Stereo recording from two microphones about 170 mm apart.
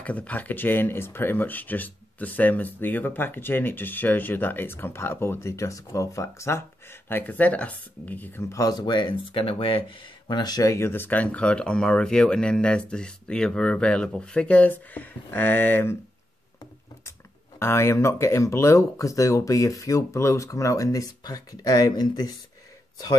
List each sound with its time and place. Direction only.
0.0 s speech: 10° left (ahead or behind)
17.6 s speech: 15° left (ahead or behind)